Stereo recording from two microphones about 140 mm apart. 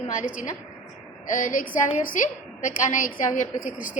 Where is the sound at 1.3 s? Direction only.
75° left (ahead or behind).